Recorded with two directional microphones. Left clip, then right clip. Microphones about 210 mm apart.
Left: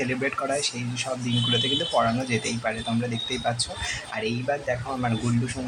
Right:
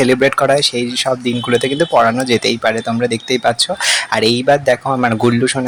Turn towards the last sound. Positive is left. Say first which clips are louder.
# right 14 dB
turn(degrees=-45)  # may be behind; listen again after turning